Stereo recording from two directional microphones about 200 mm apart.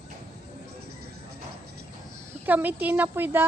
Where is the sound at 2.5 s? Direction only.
10° right (ahead or behind).